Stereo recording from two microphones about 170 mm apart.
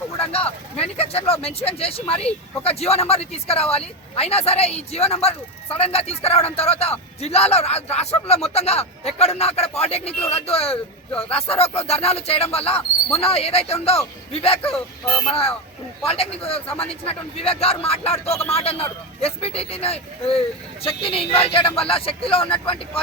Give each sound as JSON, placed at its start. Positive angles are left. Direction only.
{"t": 0.2, "sound": "speech", "side_deg": 35}
{"t": 16.0, "sound": "speech", "side_deg": 35}